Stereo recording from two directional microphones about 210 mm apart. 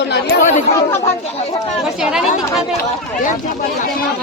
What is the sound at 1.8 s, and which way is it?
Speech, centre (ahead or behind).